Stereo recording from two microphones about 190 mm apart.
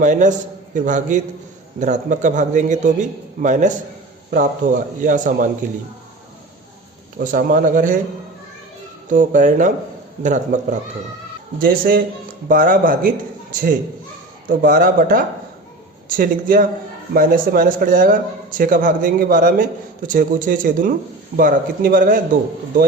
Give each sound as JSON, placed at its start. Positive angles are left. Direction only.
{"t": 0.0, "sound": "a man's voice", "side_deg": -40}
{"t": 7.2, "sound": "a man's voice", "side_deg": -45}
{"t": 9.0, "sound": "a man's voice", "side_deg": -45}
{"t": 11.6, "sound": "a man's voice", "side_deg": -50}